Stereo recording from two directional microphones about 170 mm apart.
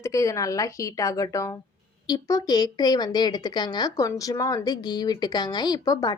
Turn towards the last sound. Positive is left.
turn(degrees=20)  # may be behind; listen again after turning